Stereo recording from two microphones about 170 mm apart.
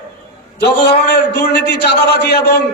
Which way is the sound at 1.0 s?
70° left (ahead or behind).